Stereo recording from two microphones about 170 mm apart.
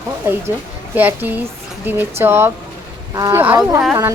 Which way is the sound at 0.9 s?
10° right (ahead or behind).